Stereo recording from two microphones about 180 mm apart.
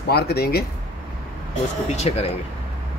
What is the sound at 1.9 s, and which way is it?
Speech, 35° left (ahead or behind).